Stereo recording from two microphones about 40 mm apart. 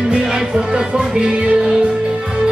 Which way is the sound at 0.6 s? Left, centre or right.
Right.